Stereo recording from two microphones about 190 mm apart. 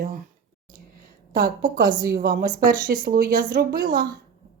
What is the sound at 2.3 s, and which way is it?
Speech, 45° right (ahead or behind).